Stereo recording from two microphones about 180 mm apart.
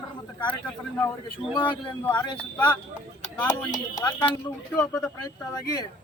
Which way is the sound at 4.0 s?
20° left (ahead or behind).